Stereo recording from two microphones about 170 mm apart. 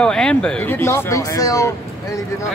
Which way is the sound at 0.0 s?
5° left (ahead or behind).